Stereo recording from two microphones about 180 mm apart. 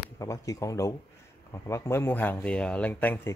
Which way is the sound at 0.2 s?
20° left (ahead or behind).